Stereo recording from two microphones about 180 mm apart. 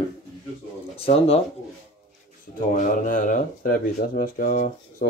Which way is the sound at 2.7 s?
50° left (ahead or behind).